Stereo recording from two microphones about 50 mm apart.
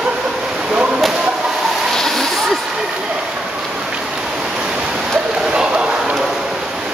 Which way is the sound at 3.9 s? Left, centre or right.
Centre.